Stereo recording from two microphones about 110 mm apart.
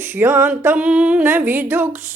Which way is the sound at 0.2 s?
20° right (ahead or behind).